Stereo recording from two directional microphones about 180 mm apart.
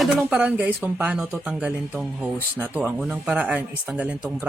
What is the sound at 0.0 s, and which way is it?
Speech, 5° right (ahead or behind).